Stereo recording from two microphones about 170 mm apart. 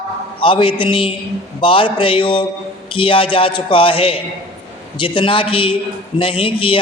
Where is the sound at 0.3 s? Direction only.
30° left (ahead or behind).